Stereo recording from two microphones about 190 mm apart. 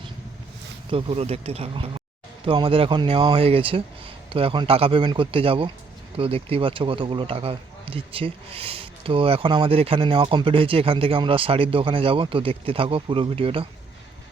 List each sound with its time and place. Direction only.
0.9 s a man's voice: 30° right (ahead or behind)